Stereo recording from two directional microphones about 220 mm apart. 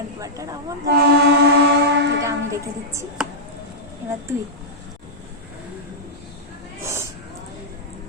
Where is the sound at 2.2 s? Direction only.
15° right (ahead or behind).